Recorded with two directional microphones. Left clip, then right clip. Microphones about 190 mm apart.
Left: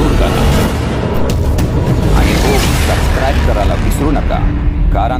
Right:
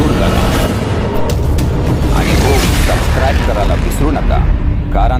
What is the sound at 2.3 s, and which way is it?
Mechanisms, centre (ahead or behind).